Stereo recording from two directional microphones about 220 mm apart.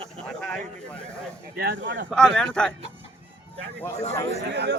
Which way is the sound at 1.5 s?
50° right (ahead or behind).